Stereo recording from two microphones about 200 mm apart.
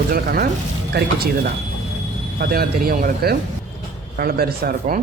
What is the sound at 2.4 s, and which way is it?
Speech, 50° right (ahead or behind).